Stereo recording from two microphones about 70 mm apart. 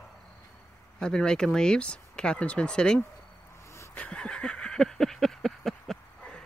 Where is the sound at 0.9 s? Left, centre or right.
Centre.